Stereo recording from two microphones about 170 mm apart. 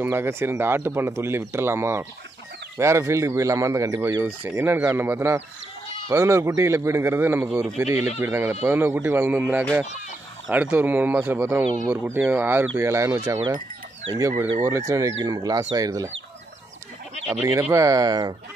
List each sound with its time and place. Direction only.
0.0 s speech: 15° right (ahead or behind)
13.3 s speech: 25° right (ahead or behind)
17.6 s speech: 20° right (ahead or behind)